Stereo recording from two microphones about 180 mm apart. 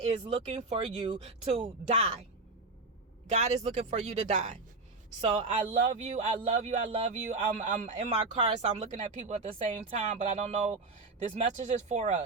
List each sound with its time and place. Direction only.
0.0 s speech: 35° right (ahead or behind)
3.2 s speech: 40° right (ahead or behind)